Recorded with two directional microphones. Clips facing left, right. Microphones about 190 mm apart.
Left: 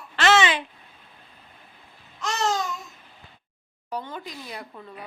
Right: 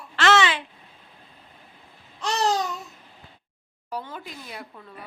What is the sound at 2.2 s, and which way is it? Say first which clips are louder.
Babbling: right 2 dB; 35° right (ahead or behind).